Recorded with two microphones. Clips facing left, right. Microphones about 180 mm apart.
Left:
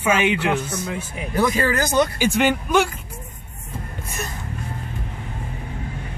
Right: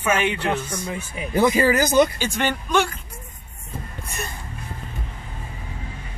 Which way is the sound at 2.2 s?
10° left (ahead or behind).